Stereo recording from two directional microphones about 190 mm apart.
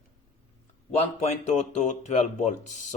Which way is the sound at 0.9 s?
35° left (ahead or behind).